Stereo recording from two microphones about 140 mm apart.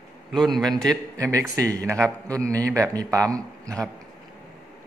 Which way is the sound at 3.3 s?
25° right (ahead or behind).